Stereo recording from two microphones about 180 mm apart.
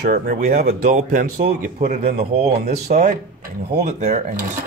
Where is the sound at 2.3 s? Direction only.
35° right (ahead or behind).